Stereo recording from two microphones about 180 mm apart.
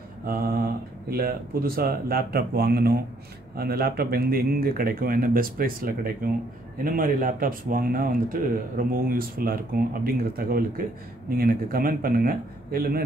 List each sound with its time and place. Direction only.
0.3 s speech: 55° right (ahead or behind)